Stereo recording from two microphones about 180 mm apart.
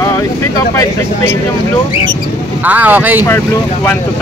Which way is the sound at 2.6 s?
10° right (ahead or behind).